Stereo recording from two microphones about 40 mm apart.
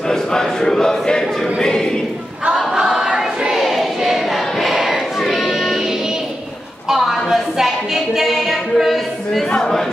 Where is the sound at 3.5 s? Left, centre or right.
Centre.